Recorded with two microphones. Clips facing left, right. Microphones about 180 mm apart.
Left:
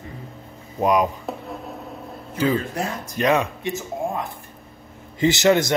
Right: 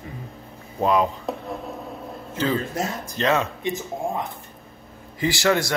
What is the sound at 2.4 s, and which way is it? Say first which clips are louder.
A man's voice: left 2 dB; 10° left (ahead or behind).